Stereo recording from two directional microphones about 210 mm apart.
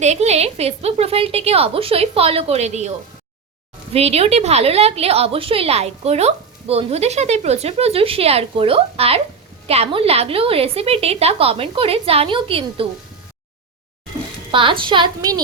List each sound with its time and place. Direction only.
0.0 s a woman's voice: 30° right (ahead or behind)
3.9 s a woman's voice: 30° right (ahead or behind)
14.5 s a woman's voice: 25° right (ahead or behind)